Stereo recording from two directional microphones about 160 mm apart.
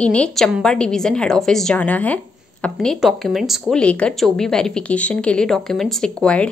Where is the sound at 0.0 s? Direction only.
5° left (ahead or behind).